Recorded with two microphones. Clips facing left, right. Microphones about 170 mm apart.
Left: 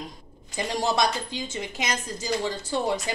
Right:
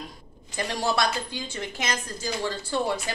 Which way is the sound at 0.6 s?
20° left (ahead or behind).